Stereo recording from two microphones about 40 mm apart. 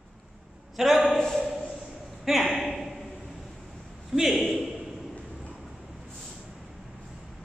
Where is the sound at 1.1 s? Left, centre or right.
Centre.